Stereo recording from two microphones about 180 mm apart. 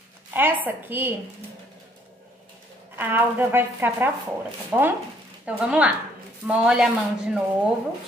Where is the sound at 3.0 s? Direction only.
10° right (ahead or behind).